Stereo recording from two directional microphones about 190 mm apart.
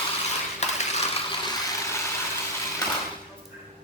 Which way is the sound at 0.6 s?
35° left (ahead or behind).